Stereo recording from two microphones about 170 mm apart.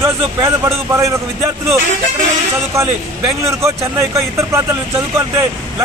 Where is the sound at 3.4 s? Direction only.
15° right (ahead or behind).